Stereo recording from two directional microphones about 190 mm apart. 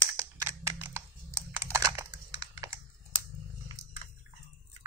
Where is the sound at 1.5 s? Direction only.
15° right (ahead or behind).